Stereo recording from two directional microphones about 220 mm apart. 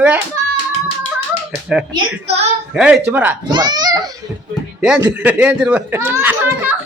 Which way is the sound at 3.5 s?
20° right (ahead or behind).